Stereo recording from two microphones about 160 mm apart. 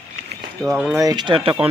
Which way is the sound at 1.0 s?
25° right (ahead or behind).